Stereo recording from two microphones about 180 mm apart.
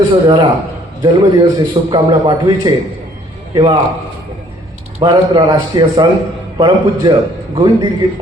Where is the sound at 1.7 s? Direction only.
25° right (ahead or behind).